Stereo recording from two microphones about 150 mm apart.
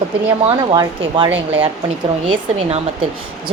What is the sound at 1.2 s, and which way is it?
Speech, 10° right (ahead or behind).